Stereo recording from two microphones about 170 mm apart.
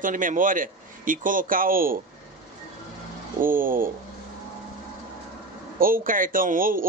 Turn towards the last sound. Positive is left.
turn(degrees=-55)  # may be behind; listen again after turning